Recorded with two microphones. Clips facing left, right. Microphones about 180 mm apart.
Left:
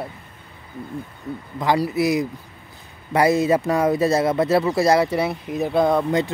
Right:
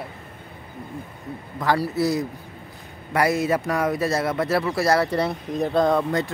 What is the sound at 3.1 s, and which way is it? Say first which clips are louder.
Speech: left 4 dB; 25° left (ahead or behind).